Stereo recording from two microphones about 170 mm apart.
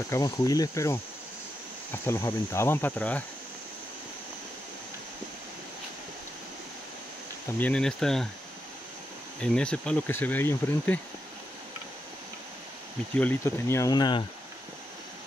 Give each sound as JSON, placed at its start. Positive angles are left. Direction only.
{"t": 0.1, "sound": "speech", "side_deg": 20}
{"t": 2.0, "sound": "insect", "side_deg": 15}
{"t": 7.5, "sound": "speech", "side_deg": 5}
{"t": 9.4, "sound": "insect", "side_deg": 5}
{"t": 13.1, "sound": "insect", "side_deg": 10}